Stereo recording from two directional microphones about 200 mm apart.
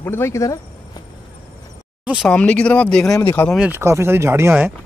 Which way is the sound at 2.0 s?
Centre (ahead or behind).